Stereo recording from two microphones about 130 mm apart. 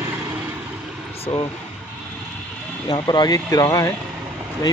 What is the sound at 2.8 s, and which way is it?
Speech, 35° left (ahead or behind).